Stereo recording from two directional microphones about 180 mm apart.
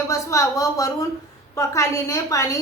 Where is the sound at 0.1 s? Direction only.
15° left (ahead or behind).